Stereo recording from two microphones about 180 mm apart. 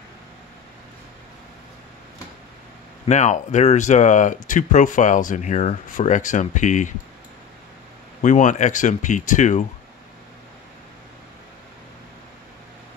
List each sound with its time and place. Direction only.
3.1 s speech: 40° left (ahead or behind)
8.2 s speech: 45° left (ahead or behind)